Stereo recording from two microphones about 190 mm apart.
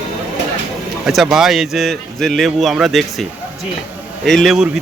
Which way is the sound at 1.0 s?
Centre (ahead or behind).